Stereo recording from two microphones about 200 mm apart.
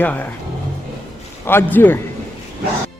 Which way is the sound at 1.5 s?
10° left (ahead or behind).